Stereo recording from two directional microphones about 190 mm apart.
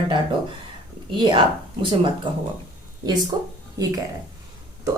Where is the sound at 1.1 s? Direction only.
25° right (ahead or behind).